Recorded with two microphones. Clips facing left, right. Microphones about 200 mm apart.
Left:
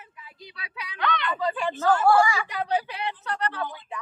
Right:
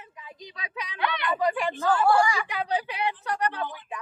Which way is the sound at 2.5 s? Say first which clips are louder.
Left 1 dB; 10° right (ahead or behind).